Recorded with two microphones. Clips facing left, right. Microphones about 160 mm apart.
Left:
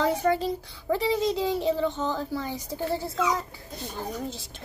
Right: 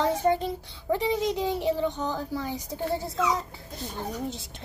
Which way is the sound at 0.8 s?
15° right (ahead or behind).